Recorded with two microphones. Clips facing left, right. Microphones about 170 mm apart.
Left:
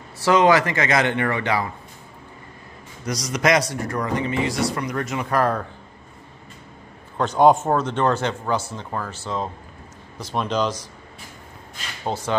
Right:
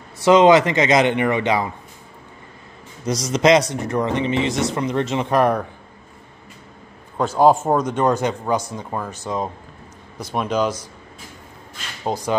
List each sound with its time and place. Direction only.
0.2 s speech: 20° right (ahead or behind)
3.1 s speech: 25° right (ahead or behind)
7.2 s speech: 5° right (ahead or behind)
12.0 s speech: 15° right (ahead or behind)